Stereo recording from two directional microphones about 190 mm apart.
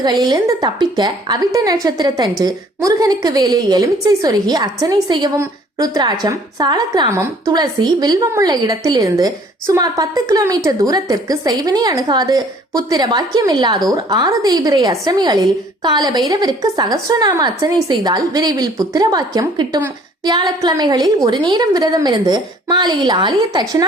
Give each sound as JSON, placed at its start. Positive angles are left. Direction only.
{"t": 0.0, "sound": "a woman's voice", "side_deg": -20}